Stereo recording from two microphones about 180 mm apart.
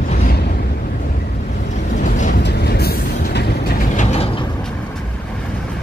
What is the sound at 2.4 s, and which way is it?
Vehicle, 65° left (ahead or behind).